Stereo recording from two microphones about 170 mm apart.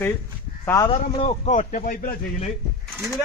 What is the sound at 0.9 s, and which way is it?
A man's voice, 35° left (ahead or behind).